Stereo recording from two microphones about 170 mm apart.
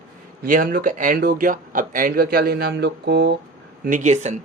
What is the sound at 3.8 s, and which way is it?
Speech, 45° right (ahead or behind).